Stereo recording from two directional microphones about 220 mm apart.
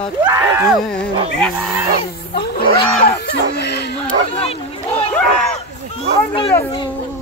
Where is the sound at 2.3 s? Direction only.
45° left (ahead or behind).